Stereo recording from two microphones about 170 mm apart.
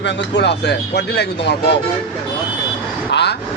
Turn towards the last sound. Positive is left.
turn(degrees=90)